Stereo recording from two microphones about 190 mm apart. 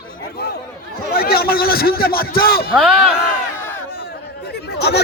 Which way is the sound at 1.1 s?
55° left (ahead or behind).